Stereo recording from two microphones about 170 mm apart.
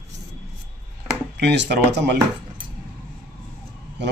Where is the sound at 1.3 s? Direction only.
85° right.